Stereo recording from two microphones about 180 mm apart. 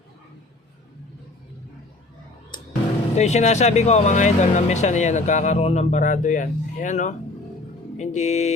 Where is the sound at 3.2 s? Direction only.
40° left (ahead or behind).